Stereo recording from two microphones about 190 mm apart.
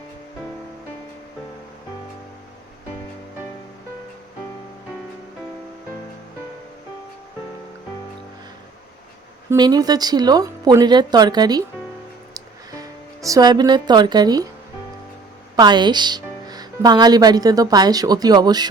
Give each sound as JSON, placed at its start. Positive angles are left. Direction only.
{"t": 9.5, "sound": "speech", "side_deg": -20}
{"t": 12.3, "sound": "music", "side_deg": -20}
{"t": 15.5, "sound": "speech", "side_deg": -20}